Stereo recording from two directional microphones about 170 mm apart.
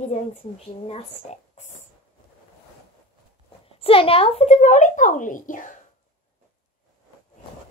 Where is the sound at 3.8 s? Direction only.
35° left (ahead or behind); by 5.7 s 50° left (ahead or behind).